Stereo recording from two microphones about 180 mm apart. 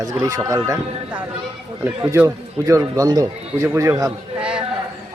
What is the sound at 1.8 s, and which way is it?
A man's voice, 10° right (ahead or behind).